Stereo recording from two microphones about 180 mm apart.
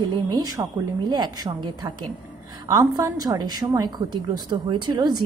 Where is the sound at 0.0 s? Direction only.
25° right (ahead or behind).